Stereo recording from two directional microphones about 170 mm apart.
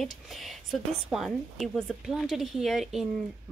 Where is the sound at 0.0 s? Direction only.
Centre (ahead or behind).